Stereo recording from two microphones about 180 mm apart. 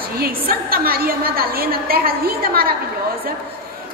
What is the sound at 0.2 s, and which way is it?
A woman's voice, 55° right (ahead or behind).